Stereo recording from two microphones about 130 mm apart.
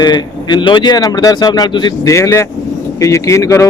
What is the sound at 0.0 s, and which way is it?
Speech, 35° left (ahead or behind).